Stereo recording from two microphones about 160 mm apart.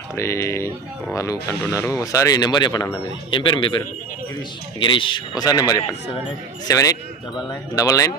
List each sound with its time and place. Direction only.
0.1 s a man's voice: 20° left (ahead or behind)
4.7 s a man's voice: 30° left (ahead or behind)